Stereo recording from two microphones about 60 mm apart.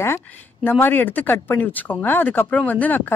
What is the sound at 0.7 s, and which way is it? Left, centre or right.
Speech, left.